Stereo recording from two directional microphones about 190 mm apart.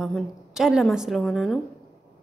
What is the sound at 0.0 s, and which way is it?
A woman's voice, centre (ahead or behind).